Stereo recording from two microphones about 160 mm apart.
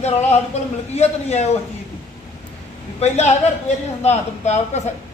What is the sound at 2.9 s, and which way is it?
A man's voice, 45° left (ahead or behind).